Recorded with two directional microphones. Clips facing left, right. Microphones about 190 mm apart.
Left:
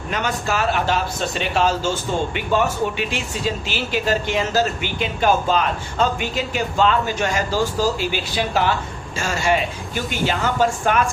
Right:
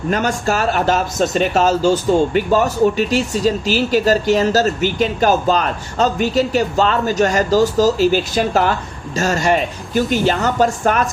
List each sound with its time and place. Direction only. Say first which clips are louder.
0.1 s speech: right 5 dB; 40° right (ahead or behind)